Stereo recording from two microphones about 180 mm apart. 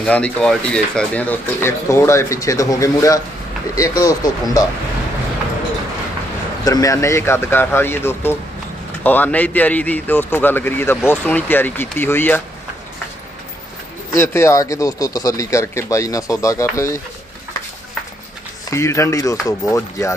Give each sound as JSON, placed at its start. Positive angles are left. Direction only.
{"t": 0.0, "sound": "speech", "side_deg": 5}
{"t": 6.7, "sound": "speech", "side_deg": 20}
{"t": 14.1, "sound": "speech", "side_deg": 15}
{"t": 18.7, "sound": "speech", "side_deg": 15}